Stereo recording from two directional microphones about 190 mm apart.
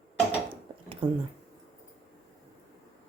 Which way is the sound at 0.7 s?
25° right (ahead or behind).